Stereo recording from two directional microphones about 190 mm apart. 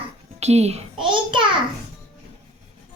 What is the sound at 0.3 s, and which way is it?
A child's voice, 35° right (ahead or behind).